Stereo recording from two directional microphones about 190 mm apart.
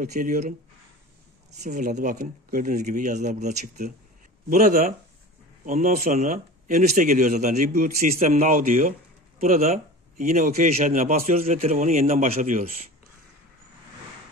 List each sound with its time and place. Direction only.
0.0 s a man's voice: 40° right (ahead or behind)
1.6 s a man's voice: 40° right (ahead or behind)